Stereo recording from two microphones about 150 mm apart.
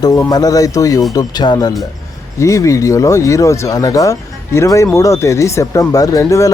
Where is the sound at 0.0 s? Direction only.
25° left (ahead or behind).